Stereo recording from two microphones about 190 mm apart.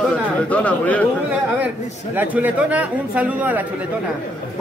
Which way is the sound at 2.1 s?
10° right (ahead or behind).